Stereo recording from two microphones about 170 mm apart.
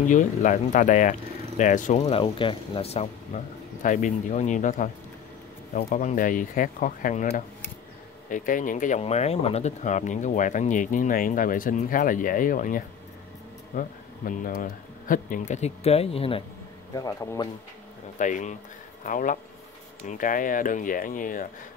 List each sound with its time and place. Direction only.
0.0 s speech: 50° left (ahead or behind)
3.8 s speech: 50° left (ahead or behind)
16.9 s speech: 20° left (ahead or behind)
18.2 s speech: 45° left (ahead or behind)